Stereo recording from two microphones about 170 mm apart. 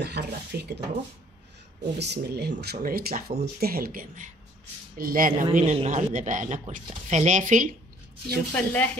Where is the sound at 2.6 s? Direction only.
65° right (ahead or behind); by 7.7 s 50° right (ahead or behind).